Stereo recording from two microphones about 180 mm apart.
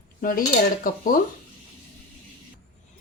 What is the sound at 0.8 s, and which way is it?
Speech, 50° left (ahead or behind).